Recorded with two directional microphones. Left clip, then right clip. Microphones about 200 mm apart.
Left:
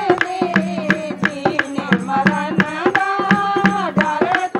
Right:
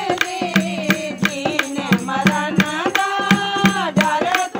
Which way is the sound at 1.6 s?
60° right (ahead or behind).